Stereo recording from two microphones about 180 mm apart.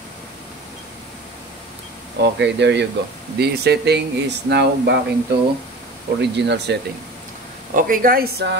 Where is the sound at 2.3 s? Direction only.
75° right (ahead or behind).